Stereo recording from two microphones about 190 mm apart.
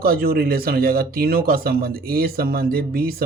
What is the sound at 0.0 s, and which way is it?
Speech, 50° right (ahead or behind).